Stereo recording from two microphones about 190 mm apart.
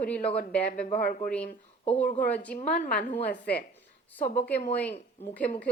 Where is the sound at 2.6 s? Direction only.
40° left (ahead or behind).